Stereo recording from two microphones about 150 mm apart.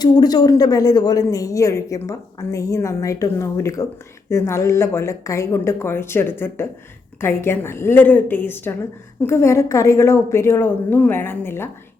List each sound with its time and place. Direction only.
0.0 s a woman's voice: 25° left (ahead or behind)